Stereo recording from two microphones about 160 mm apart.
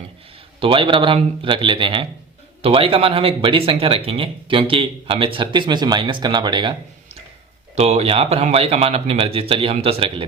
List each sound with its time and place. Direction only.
0.6 s speech: 30° right (ahead or behind)
7.8 s speech: 40° right (ahead or behind)